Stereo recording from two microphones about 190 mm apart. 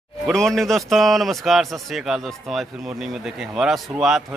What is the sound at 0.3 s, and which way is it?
A man's voice, 5° left (ahead or behind).